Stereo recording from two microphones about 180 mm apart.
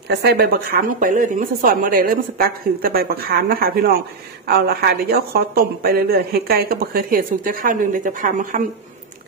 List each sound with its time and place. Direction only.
0.1 s a woman's voice: 65° right (ahead or behind); by 8.6 s 50° right (ahead or behind)